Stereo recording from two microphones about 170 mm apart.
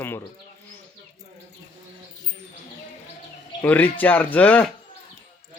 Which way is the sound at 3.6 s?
10° left (ahead or behind).